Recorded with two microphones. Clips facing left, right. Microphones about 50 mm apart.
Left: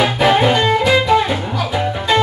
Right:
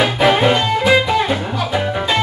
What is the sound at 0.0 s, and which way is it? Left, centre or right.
Music, centre.